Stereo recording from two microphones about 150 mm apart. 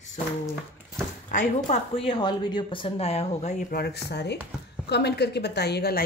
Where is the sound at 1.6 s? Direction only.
40° left (ahead or behind).